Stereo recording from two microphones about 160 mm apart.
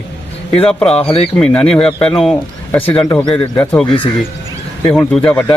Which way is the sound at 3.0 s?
20° left (ahead or behind).